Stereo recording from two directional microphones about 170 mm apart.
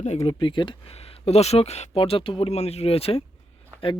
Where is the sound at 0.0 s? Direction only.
40° left (ahead or behind).